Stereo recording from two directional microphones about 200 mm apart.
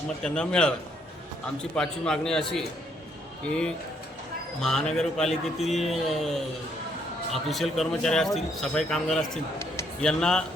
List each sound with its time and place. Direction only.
0.2 s speech: 5° left (ahead or behind)
1.7 s speech: 5° left (ahead or behind)
7.4 s speech: centre (ahead or behind)